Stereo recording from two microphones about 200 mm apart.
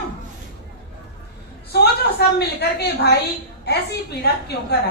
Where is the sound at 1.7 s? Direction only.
55° left (ahead or behind).